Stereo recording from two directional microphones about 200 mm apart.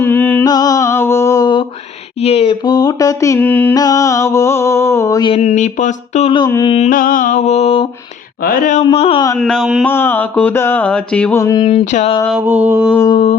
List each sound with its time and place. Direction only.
0.0 s mantra: 10° left (ahead or behind)
2.2 s a sound: 30° left (ahead or behind)
5.3 s speech: 30° left (ahead or behind)
6.3 s mantra: 20° left (ahead or behind)
6.9 s speech: 45° left (ahead or behind)
8.8 s mantra: 30° left (ahead or behind)
9.4 s speech: centre (ahead or behind)
9.8 s a sound: 10° left (ahead or behind)
11.6 s speech: 30° left (ahead or behind)
12.4 s mantra: 10° right (ahead or behind)
13.1 s mantra: 25° left (ahead or behind)